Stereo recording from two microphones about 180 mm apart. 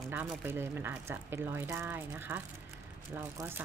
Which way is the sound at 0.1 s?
10° right (ahead or behind).